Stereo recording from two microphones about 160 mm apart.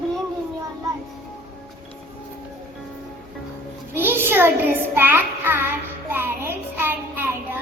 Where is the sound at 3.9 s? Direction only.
15° right (ahead or behind).